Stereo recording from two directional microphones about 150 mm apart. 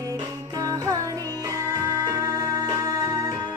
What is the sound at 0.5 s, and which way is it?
Music, 25° right (ahead or behind).